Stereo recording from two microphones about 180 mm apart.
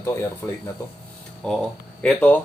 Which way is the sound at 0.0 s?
15° left (ahead or behind).